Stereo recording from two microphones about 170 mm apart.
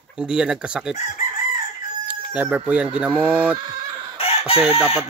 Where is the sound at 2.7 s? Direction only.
5° right (ahead or behind).